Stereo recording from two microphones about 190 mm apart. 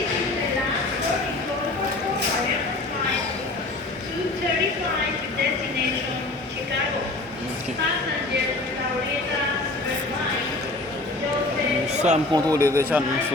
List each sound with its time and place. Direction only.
11.9 s speech: 35° right (ahead or behind)
12.3 s a man's voice: 15° right (ahead or behind)